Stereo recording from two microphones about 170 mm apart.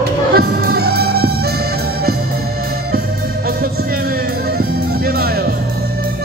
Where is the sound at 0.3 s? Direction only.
70° right (ahead or behind).